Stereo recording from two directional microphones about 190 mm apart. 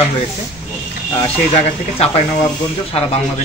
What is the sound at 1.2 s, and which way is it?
A man's voice, 30° left (ahead or behind).